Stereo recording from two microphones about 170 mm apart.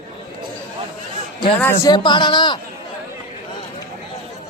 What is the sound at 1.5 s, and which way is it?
Speech, 10° left (ahead or behind).